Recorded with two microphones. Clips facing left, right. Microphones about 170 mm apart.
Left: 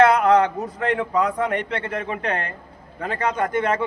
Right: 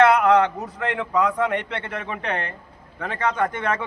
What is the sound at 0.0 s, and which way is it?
A man's voice, 35° left (ahead or behind).